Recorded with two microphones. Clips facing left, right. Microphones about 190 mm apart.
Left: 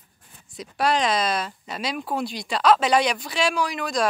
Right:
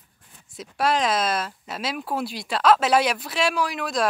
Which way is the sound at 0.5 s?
Centre (ahead or behind).